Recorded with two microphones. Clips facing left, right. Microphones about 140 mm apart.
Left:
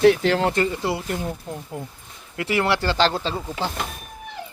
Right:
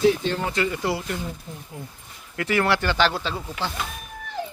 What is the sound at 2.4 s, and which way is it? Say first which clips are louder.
Speech: even; 25° left (ahead or behind).